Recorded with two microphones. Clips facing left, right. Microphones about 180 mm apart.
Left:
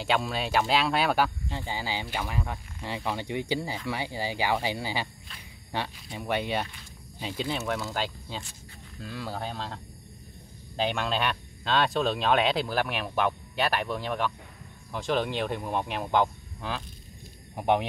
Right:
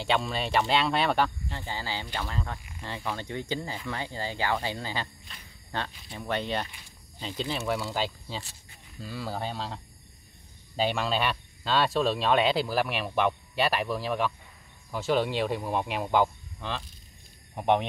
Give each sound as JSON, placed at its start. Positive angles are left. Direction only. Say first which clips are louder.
{"t": 0.0, "sound": "speech", "louder": "even", "side_deg": 0}
{"t": 1.5, "sound": "speech", "louder": "left 2 dB", "side_deg": 15}
{"t": 6.3, "sound": "speech", "louder": "left 1 dB", "side_deg": 10}
{"t": 10.8, "sound": "speech", "louder": "right 1 dB", "side_deg": -5}
{"t": 17.6, "sound": "speech", "louder": "even", "side_deg": 5}